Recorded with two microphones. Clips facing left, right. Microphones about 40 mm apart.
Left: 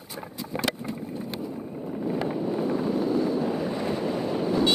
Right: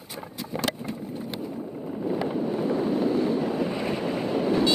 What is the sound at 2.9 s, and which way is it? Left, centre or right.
Vehicle, right.